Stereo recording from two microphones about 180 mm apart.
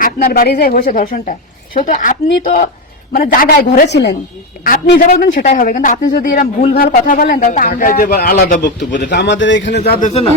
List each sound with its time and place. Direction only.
0.0 s a man's voice: 50° left (ahead or behind); by 4.1 s 70° left (ahead or behind)
4.6 s a man's voice: 50° left (ahead or behind)
9.0 s a man's voice: 75° left (ahead or behind)
10.1 s speech: 35° left (ahead or behind)